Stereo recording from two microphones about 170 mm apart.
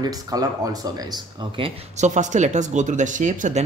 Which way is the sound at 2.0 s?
45° right (ahead or behind).